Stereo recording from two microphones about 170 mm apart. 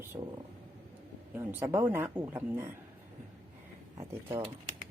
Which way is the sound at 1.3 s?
10° right (ahead or behind).